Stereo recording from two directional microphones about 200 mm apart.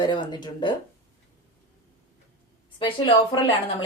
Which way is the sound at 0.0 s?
20° left (ahead or behind).